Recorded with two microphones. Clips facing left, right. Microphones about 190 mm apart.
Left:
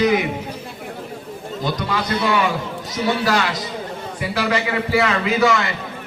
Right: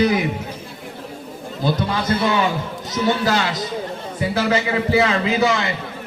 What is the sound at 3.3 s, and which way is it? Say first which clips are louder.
A man's voice: even; 20° right (ahead or behind).